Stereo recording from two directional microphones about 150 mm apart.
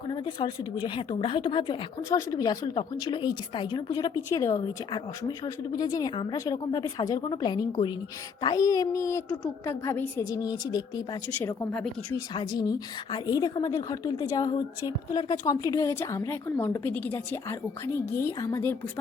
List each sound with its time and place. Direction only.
0.1 s a woman's voice: 35° left (ahead or behind)
11.3 s a woman's voice: 10° left (ahead or behind)
12.3 s a woman's voice: 30° left (ahead or behind)